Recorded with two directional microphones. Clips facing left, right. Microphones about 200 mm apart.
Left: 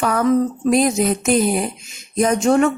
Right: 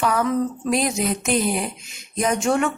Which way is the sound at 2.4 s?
40° left (ahead or behind).